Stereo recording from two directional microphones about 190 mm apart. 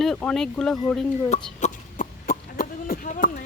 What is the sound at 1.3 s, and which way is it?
Cough, 40° left (ahead or behind).